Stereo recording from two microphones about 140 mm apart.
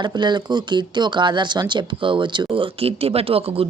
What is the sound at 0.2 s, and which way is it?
Speech, 30° right (ahead or behind).